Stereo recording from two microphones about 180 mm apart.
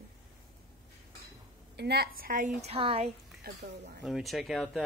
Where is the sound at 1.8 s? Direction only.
60° right (ahead or behind); by 3.1 s 30° right (ahead or behind).